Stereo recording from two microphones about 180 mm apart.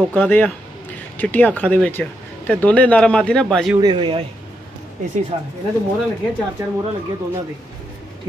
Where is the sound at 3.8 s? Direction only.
25° right (ahead or behind).